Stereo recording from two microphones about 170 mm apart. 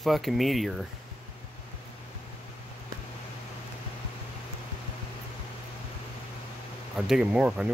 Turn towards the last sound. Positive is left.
turn(degrees=-5)  # may be behind; listen again after turning